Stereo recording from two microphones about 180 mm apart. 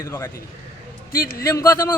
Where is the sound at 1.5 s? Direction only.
15° left (ahead or behind).